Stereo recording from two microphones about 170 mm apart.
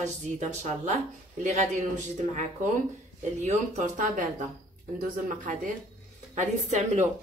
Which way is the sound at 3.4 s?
45° right (ahead or behind).